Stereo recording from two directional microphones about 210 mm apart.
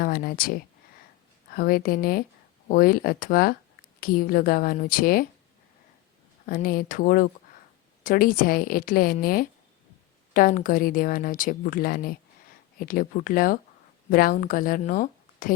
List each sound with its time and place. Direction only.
0.0 s a woman's voice: 45° left (ahead or behind)
6.4 s a woman's voice: 45° left (ahead or behind)